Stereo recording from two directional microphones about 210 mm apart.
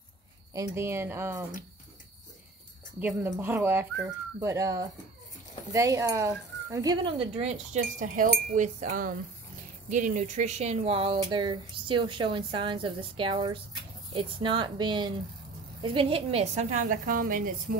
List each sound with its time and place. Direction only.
0.5 s speech: 15° right (ahead or behind)
3.0 s a woman's voice: 10° right (ahead or behind); by 17.7 s 40° right (ahead or behind)